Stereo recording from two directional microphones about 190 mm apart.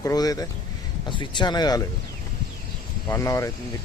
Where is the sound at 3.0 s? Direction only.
15° left (ahead or behind).